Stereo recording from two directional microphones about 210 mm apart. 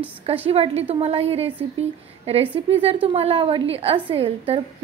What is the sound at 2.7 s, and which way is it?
A woman's voice, 30° right (ahead or behind).